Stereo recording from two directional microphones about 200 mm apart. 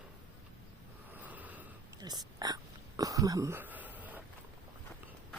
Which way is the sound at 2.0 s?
20° right (ahead or behind).